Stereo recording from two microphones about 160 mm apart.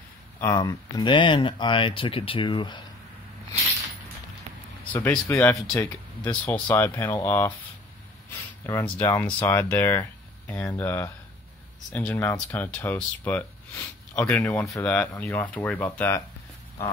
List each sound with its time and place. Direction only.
0.6 s speech: 25° left (ahead or behind)
4.9 s speech: 10° left (ahead or behind)
8.6 s speech: 10° left (ahead or behind)